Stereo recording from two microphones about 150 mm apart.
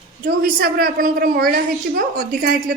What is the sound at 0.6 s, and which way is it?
Speech, 75° right (ahead or behind).